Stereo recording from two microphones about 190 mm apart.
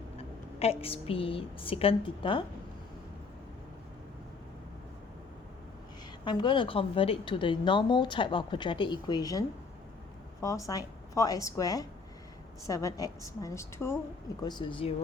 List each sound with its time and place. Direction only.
0.2 s a woman's voice: 30° left (ahead or behind)
6.2 s a woman's voice: 25° left (ahead or behind)
10.4 s speech: 15° left (ahead or behind)
14.4 s a woman's voice: 25° left (ahead or behind)